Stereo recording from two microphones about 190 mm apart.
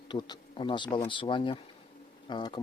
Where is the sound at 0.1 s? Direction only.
25° left (ahead or behind).